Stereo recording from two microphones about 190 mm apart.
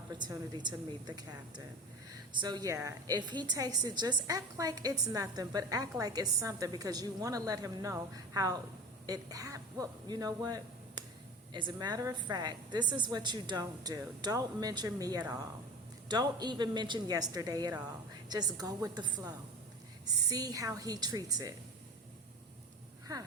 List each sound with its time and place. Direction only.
0.1 s a woman's voice: 20° right (ahead or behind)